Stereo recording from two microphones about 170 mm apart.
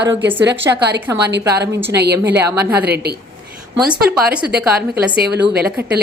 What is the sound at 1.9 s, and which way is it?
A woman's voice, 75° right (ahead or behind).